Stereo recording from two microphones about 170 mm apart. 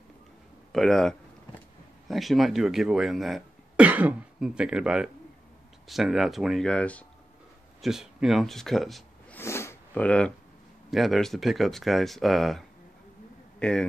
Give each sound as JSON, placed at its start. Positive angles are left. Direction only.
{"t": 0.7, "sound": "speech", "side_deg": 5}
{"t": 9.4, "sound": "sniff", "side_deg": 15}
{"t": 10.9, "sound": "a man's voice", "side_deg": 0}